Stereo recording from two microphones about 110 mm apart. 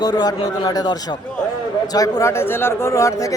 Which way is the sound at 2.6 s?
25° left (ahead or behind).